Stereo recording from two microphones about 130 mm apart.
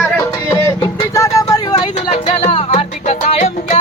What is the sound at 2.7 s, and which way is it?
Music, 55° left (ahead or behind).